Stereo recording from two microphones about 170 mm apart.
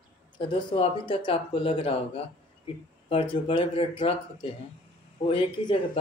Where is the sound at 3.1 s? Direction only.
30° left (ahead or behind).